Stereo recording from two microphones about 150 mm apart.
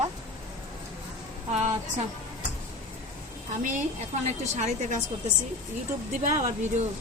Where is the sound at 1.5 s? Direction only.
45° right (ahead or behind).